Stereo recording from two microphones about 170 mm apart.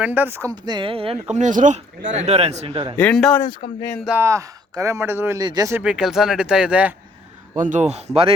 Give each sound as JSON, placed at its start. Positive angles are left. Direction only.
{"t": 0.0, "sound": "speech", "side_deg": -10}
{"t": 0.5, "sound": "speech", "side_deg": -25}
{"t": 3.0, "sound": "speech", "side_deg": 5}
{"t": 3.4, "sound": "speech", "side_deg": 25}
{"t": 4.0, "sound": "speech", "side_deg": -10}
{"t": 5.8, "sound": "speech", "side_deg": -5}
{"t": 7.6, "sound": "speech", "side_deg": -45}